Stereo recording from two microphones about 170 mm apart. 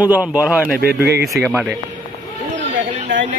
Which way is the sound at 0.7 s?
65° right (ahead or behind).